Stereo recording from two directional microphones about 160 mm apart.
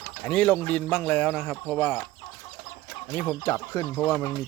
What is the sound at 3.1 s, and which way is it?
Speech, 10° left (ahead or behind).